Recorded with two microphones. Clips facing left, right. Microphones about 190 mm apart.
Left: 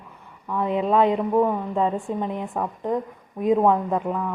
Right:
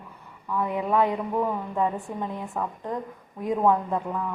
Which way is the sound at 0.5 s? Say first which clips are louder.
Left 4 dB; 25° left (ahead or behind).